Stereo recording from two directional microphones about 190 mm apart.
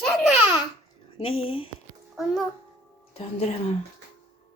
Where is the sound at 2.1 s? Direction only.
Centre (ahead or behind).